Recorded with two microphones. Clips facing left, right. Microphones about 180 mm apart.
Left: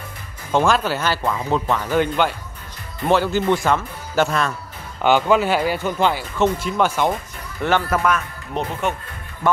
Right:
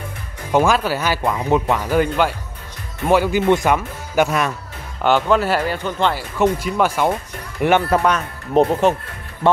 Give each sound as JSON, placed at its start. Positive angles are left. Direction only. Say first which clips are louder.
{"t": 0.5, "sound": "speech", "louder": "right 2 dB", "side_deg": -10}
{"t": 5.0, "sound": "speech", "louder": "even", "side_deg": 0}
{"t": 6.1, "sound": "speech", "louder": "right 2 dB", "side_deg": -10}
{"t": 7.9, "sound": "speech", "louder": "right 3 dB", "side_deg": -30}